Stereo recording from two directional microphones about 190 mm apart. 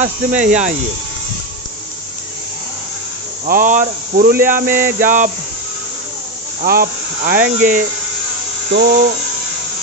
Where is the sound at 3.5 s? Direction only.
45° right (ahead or behind).